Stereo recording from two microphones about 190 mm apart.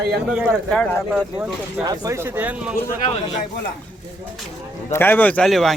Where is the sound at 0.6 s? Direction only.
5° left (ahead or behind).